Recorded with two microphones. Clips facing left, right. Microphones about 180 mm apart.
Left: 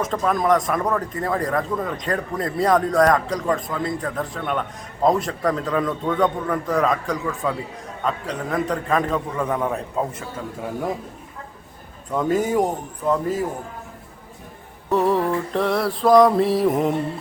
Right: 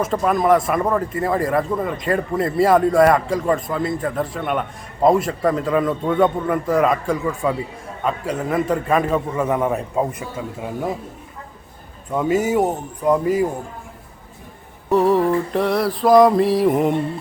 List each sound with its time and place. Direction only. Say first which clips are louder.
0.0 s a man's voice: right 3 dB; 5° right (ahead or behind)
12.1 s a man's voice: right 2 dB; 5° right (ahead or behind)
14.8 s speech: right 4 dB; centre (ahead or behind)